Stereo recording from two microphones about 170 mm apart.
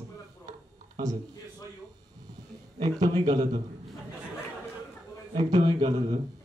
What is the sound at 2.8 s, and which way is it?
Speech, 25° right (ahead or behind).